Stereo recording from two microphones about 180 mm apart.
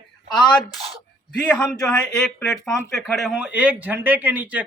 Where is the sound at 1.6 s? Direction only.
5° left (ahead or behind).